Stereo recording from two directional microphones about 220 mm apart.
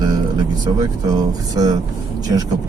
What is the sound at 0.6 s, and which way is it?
A man's voice, 15° right (ahead or behind).